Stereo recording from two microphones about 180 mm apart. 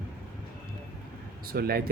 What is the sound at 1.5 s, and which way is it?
Speech, 55° right (ahead or behind).